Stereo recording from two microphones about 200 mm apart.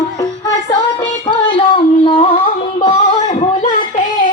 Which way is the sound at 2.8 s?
40° left (ahead or behind).